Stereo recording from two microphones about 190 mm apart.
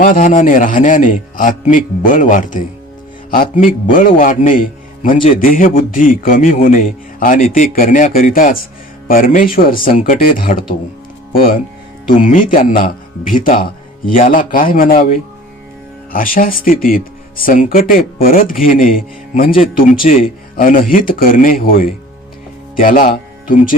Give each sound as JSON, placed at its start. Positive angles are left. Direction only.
{"t": 0.0, "sound": "speech", "side_deg": 45}
{"t": 12.0, "sound": "speech", "side_deg": 40}